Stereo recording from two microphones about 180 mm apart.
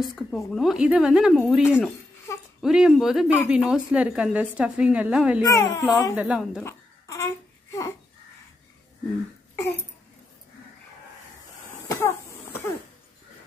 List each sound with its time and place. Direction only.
0.0 s speech: centre (ahead or behind)
2.3 s a sound: 15° left (ahead or behind)
2.6 s a woman's voice: 5° right (ahead or behind)
5.4 s speech: 20° left (ahead or behind)
6.1 s a woman's voice: 5° right (ahead or behind)
6.6 s babbling: 15° left (ahead or behind)
11.9 s cough: 15° left (ahead or behind)